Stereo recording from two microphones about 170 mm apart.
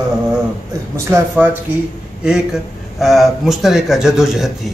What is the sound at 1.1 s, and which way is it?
A man's voice, 10° right (ahead or behind).